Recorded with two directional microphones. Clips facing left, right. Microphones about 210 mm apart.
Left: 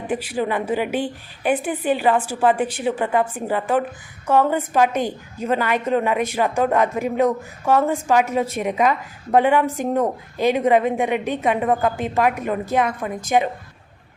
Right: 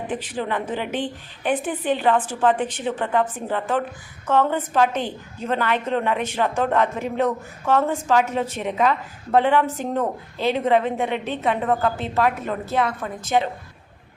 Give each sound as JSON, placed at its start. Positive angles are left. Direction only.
{"t": 0.1, "sound": "a woman's voice", "side_deg": 10}